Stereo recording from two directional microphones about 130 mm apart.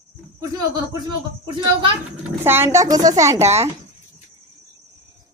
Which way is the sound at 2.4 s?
20° right (ahead or behind).